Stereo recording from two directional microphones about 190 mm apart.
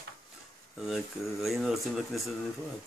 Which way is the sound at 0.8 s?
Centre (ahead or behind).